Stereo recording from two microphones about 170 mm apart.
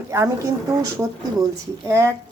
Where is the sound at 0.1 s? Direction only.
15° right (ahead or behind).